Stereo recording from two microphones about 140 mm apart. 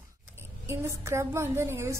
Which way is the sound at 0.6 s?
20° right (ahead or behind).